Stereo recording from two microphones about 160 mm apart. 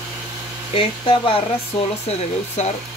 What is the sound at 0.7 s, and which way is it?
Speech, 35° left (ahead or behind).